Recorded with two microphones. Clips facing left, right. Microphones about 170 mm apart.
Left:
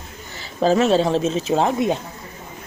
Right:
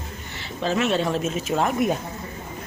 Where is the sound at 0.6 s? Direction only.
35° left (ahead or behind).